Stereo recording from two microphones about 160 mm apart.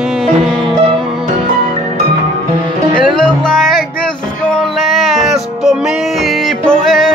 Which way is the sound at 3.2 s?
5° left (ahead or behind).